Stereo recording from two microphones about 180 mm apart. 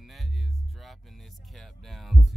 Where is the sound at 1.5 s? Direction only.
Centre (ahead or behind).